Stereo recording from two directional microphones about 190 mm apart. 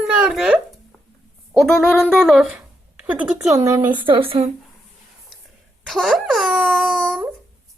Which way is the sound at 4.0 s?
25° right (ahead or behind).